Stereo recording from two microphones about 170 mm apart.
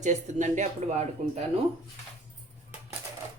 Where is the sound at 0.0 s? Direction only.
45° right (ahead or behind).